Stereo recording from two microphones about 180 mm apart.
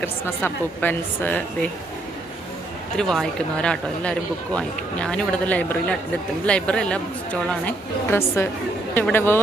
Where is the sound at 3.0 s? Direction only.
5° left (ahead or behind).